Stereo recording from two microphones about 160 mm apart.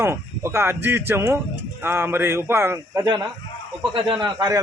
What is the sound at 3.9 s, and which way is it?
Speech, 30° right (ahead or behind).